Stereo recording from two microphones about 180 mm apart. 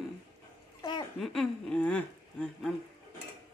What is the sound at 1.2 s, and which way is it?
Chuckle, centre (ahead or behind).